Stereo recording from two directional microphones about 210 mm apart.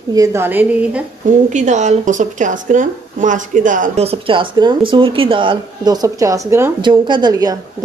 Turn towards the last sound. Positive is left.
turn(degrees=-20)  # may be behind; listen again after turning